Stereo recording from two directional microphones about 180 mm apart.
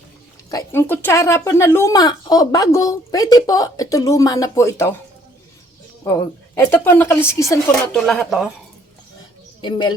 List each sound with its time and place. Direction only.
0.5 s speech: 15° left (ahead or behind)
6.1 s a woman's voice: 15° left (ahead or behind)
7.9 s speech: 5° left (ahead or behind)
9.6 s speech: 25° left (ahead or behind)